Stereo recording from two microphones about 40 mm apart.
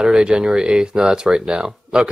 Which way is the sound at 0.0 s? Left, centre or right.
Right.